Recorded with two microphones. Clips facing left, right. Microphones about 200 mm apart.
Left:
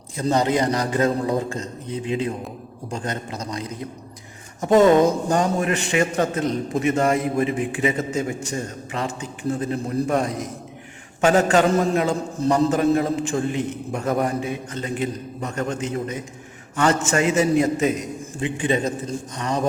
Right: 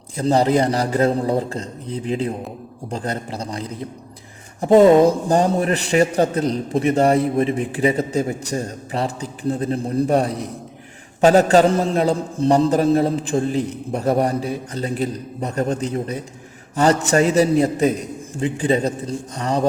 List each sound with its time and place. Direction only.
0.2 s a man's voice: 30° right (ahead or behind)